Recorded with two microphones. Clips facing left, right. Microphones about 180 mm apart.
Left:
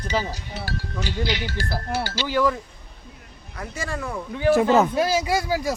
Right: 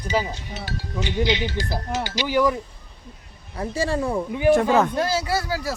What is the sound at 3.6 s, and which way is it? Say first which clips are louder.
Speech: right 7 dB; 30° right (ahead or behind).